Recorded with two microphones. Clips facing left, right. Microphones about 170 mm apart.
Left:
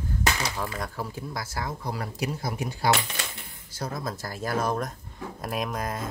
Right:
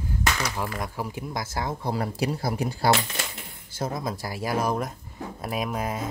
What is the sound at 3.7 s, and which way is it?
Speech, 20° right (ahead or behind).